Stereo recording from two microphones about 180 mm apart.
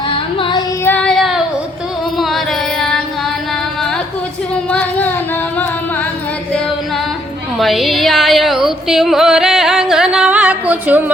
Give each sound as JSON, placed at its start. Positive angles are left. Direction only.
{"t": 0.1, "sound": "music", "side_deg": 30}
{"t": 0.9, "sound": "child singing", "side_deg": 5}
{"t": 2.1, "sound": "music", "side_deg": 0}
{"t": 4.7, "sound": "child singing", "side_deg": 10}
{"t": 7.6, "sound": "music", "side_deg": 0}